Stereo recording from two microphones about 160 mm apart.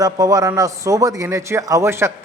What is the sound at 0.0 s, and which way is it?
A man's voice, 20° right (ahead or behind).